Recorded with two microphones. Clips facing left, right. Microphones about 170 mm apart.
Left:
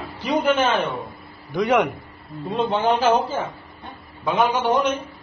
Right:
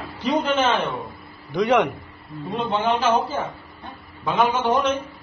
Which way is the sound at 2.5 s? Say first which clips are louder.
Left 2 dB; 35° left (ahead or behind).